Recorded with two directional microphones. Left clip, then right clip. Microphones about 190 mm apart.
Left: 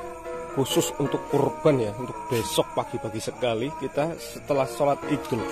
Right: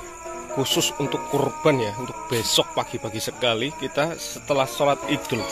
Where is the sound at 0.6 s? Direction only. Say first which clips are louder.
Right 2 dB; 10° left (ahead or behind).